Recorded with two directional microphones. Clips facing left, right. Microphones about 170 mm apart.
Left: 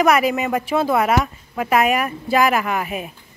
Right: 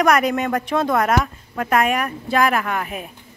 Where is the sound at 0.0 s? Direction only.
5° left (ahead or behind).